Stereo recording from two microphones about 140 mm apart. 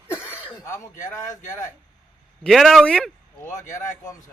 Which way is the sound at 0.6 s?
20° left (ahead or behind).